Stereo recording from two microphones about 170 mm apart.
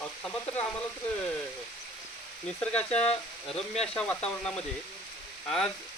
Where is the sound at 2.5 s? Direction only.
10° left (ahead or behind).